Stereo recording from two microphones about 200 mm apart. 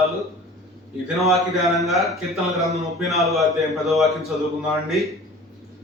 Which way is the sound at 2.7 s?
Centre (ahead or behind).